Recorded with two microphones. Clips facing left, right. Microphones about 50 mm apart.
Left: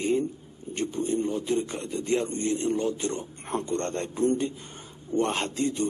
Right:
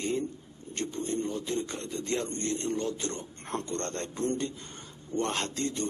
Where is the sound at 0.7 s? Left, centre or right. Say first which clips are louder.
Left 5 dB; centre.